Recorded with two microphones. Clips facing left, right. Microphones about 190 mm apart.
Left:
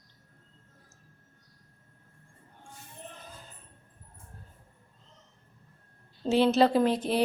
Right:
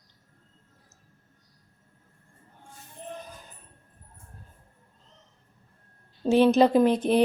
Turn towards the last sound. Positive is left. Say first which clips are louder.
# right 5 dB
turn(degrees=-20)  # may be behind; listen again after turning